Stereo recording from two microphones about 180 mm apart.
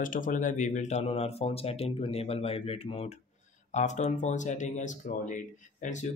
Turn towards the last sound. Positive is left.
turn(degrees=45)  # may be behind; listen again after turning